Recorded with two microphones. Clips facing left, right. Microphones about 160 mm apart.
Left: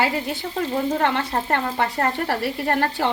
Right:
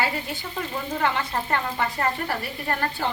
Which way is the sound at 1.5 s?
65° left (ahead or behind).